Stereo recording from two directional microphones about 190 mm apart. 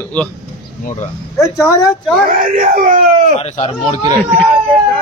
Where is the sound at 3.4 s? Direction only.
30° left (ahead or behind).